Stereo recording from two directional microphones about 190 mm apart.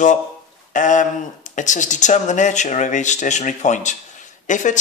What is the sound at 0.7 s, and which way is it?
Speech, 40° left (ahead or behind).